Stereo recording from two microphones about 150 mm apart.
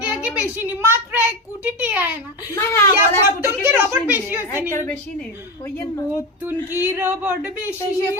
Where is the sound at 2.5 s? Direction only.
20° left (ahead or behind).